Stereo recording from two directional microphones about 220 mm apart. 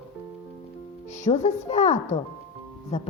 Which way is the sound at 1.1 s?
30° left (ahead or behind).